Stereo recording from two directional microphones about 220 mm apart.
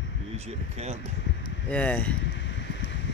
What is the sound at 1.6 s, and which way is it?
Speech, 5° left (ahead or behind).